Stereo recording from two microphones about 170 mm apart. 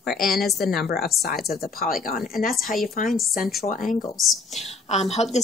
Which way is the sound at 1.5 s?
60° left (ahead or behind).